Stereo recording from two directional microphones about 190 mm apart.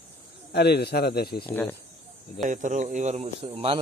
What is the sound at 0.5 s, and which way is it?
Speech, 60° left (ahead or behind).